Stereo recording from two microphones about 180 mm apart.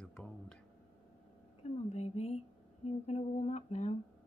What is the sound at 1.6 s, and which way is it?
Humming, 35° left (ahead or behind).